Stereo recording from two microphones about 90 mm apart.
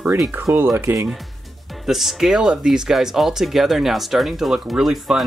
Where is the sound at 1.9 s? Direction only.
5° right (ahead or behind).